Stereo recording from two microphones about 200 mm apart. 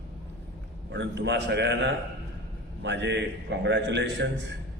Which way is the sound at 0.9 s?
60° right (ahead or behind).